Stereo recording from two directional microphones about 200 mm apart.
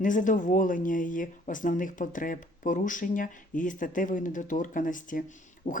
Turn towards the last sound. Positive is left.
turn(degrees=40)  # may be behind; listen again after turning